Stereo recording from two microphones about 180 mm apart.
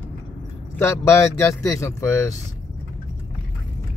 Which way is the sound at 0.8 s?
15° left (ahead or behind).